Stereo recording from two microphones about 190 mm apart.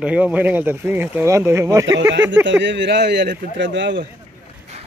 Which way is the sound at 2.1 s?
75° right (ahead or behind).